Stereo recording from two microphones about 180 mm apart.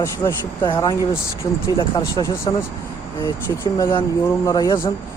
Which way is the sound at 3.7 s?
15° left (ahead or behind).